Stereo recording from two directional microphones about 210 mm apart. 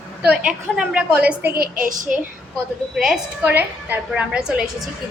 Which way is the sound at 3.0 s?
5° right (ahead or behind).